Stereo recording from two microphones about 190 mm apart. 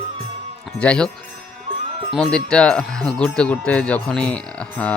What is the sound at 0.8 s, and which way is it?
Speech, 5° left (ahead or behind).